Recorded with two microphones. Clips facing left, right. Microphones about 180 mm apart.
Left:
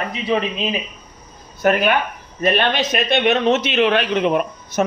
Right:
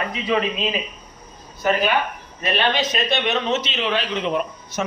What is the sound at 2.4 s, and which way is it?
A man's voice, 55° left (ahead or behind).